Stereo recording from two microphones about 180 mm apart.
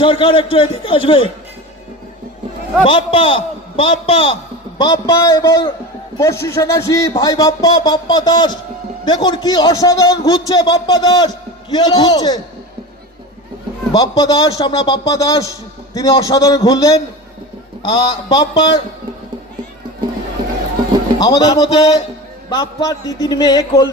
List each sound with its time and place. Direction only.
0.0 s a man's voice: 30° left (ahead or behind)
2.8 s a man's voice: 25° left (ahead or behind)
13.9 s a man's voice: 20° left (ahead or behind)
21.2 s a man's voice: 20° left (ahead or behind)